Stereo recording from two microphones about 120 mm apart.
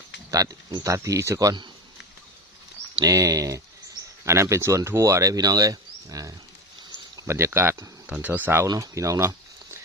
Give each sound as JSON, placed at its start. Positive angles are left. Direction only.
{"t": 0.3, "sound": "speech", "side_deg": -30}
{"t": 3.0, "sound": "speech", "side_deg": -30}
{"t": 8.6, "sound": "speech", "side_deg": -30}